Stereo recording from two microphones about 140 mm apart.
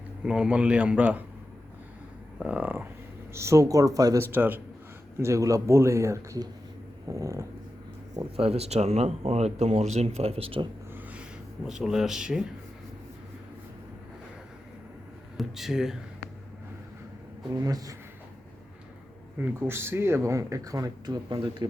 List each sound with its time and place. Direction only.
0.3 s a man's voice: 5° right (ahead or behind)
2.4 s a man's voice: 10° right (ahead or behind); by 4.3 s 25° right (ahead or behind)
4.3 s a man's voice: 15° right (ahead or behind)
8.1 s speech: 45° right (ahead or behind)
10.9 s a sound: 10° right (ahead or behind)
15.4 s speech: centre (ahead or behind)
17.6 s speech: 25° right (ahead or behind)
19.4 s speech: 15° right (ahead or behind); by 21.7 s 35° right (ahead or behind)